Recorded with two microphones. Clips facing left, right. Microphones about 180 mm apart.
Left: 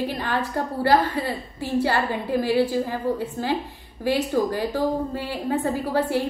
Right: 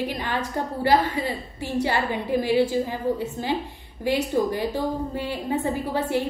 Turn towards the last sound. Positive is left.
turn(degrees=-20)  # may be behind; listen again after turning